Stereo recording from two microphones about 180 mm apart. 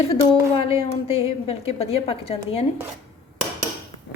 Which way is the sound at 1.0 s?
30° left (ahead or behind).